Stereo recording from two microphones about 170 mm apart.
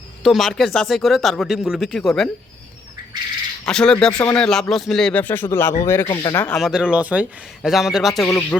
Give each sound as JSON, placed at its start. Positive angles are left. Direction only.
{"t": 0.2, "sound": "speech", "side_deg": 0}
{"t": 3.7, "sound": "speech", "side_deg": 5}
{"t": 6.5, "sound": "speech", "side_deg": 0}